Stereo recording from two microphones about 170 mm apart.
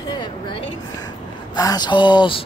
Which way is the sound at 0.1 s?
25° left (ahead or behind).